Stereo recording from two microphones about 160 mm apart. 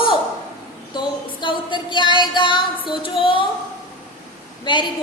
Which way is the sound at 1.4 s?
30° left (ahead or behind).